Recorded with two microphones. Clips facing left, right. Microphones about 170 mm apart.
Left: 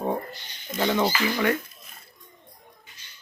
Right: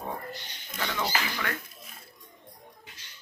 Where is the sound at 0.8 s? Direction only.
25° left (ahead or behind).